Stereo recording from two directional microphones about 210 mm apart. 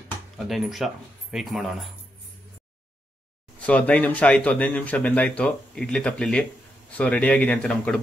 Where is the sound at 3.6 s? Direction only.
5° left (ahead or behind).